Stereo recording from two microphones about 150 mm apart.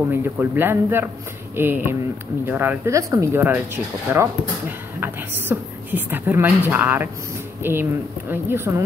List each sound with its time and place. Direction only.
0.1 s speech: 15° right (ahead or behind)